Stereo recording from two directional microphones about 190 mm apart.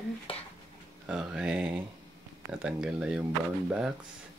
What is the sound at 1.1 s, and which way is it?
Speech, 5° right (ahead or behind).